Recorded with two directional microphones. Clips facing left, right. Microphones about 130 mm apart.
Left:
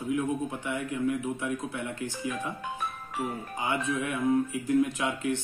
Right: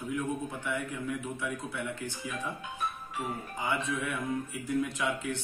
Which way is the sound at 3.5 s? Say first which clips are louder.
Left 3 dB; 15° left (ahead or behind).